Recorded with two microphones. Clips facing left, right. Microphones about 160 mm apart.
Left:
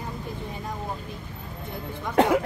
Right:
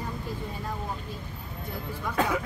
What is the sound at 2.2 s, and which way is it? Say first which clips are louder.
Speech: left 7 dB; 60° left (ahead or behind).